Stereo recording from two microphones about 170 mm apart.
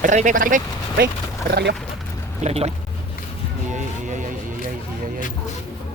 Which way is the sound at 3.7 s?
45° right (ahead or behind).